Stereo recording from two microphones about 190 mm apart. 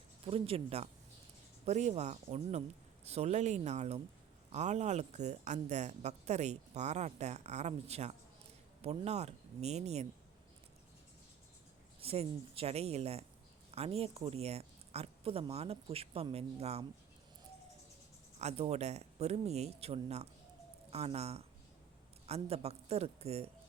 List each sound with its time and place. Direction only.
0.3 s speech: 30° right (ahead or behind)
11.9 s speech: 30° right (ahead or behind)
18.3 s speech: 35° right (ahead or behind)